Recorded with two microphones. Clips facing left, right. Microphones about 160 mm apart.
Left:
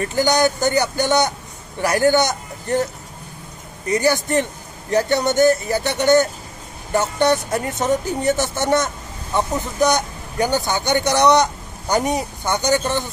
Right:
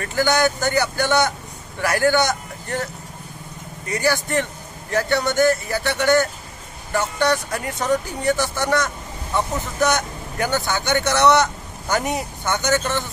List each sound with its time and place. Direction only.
0.0 s speech: 20° left (ahead or behind)
3.9 s speech: 20° left (ahead or behind)